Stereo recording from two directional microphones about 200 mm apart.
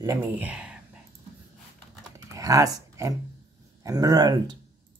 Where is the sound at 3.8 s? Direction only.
15° right (ahead or behind).